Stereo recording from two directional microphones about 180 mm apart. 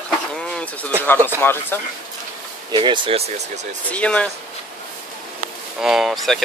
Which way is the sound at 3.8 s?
5° left (ahead or behind).